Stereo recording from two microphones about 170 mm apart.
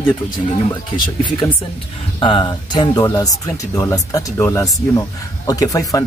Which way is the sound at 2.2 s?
30° left (ahead or behind).